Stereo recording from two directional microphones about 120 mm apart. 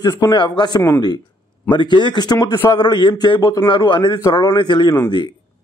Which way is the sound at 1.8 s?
40° left (ahead or behind).